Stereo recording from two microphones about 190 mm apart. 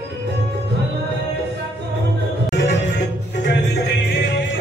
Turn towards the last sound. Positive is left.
turn(degrees=65)  # may be behind; listen again after turning